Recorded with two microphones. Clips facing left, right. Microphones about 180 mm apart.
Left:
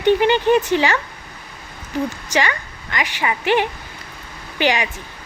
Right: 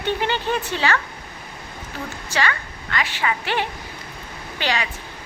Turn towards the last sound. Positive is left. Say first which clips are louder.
# left 5 dB
turn(degrees=15)  # may be behind; listen again after turning